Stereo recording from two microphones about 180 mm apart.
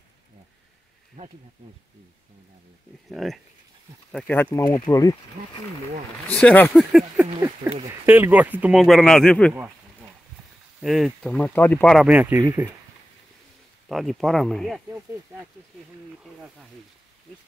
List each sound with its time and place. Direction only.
1.2 s speech: 45° right (ahead or behind)
3.1 s speech: centre (ahead or behind); by 5.1 s 20° left (ahead or behind)
6.2 s speech: 10° left (ahead or behind)
6.8 s speech: centre (ahead or behind)
10.8 s speech: centre (ahead or behind)
13.8 s speech: centre (ahead or behind)
16.2 s speech: 5° right (ahead or behind)